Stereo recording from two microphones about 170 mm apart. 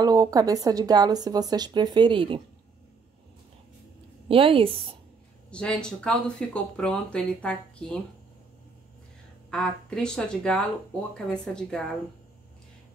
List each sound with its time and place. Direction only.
0.0 s a woman's voice: 20° right (ahead or behind)
4.3 s a woman's voice: 30° right (ahead or behind)
5.5 s speech: 5° left (ahead or behind)
9.5 s speech: 5° left (ahead or behind)